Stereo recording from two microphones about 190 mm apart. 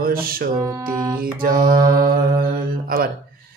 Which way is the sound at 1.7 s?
20° right (ahead or behind).